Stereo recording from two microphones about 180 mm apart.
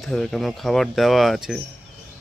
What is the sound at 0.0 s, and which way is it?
Speech, 5° left (ahead or behind).